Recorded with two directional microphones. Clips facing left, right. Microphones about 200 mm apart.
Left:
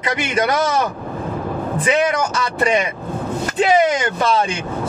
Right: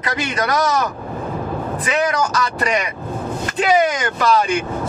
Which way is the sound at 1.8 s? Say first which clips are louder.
Left 2 dB; 25° left (ahead or behind).